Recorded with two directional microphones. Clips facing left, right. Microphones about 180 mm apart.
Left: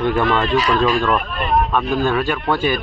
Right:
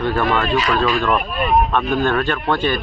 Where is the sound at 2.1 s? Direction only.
10° left (ahead or behind).